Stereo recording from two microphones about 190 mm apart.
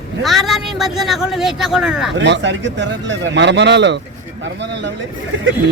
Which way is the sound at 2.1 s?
70° right (ahead or behind).